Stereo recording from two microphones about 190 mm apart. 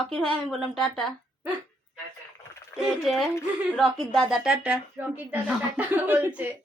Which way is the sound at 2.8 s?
Centre (ahead or behind).